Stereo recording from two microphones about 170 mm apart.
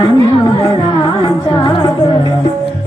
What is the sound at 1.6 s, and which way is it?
Music, 20° left (ahead or behind).